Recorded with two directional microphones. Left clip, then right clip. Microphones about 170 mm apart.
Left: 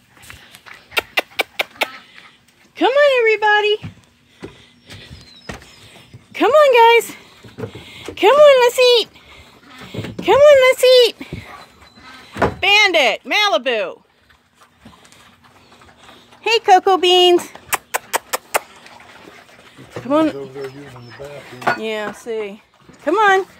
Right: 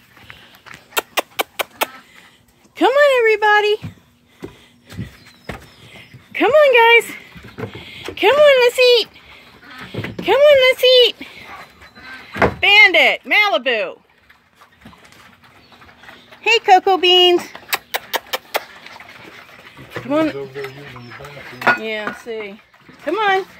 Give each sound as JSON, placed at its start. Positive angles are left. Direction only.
{"t": 0.9, "sound": "a sound", "side_deg": -5}
{"t": 2.7, "sound": "speech", "side_deg": 5}
{"t": 6.3, "sound": "speech", "side_deg": 10}
{"t": 7.7, "sound": "a sound", "side_deg": 20}
{"t": 10.2, "sound": "speech", "side_deg": 20}
{"t": 12.3, "sound": "speech", "side_deg": 15}
{"t": 16.4, "sound": "speech", "side_deg": 10}
{"t": 17.5, "sound": "a sound", "side_deg": 15}
{"t": 20.1, "sound": "speech", "side_deg": 20}
{"t": 22.2, "sound": "speech", "side_deg": 25}